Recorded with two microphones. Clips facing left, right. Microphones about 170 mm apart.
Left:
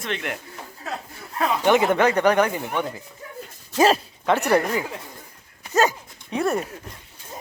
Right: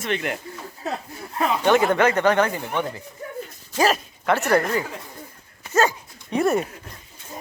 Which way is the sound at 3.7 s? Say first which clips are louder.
Left 3 dB; 20° left (ahead or behind).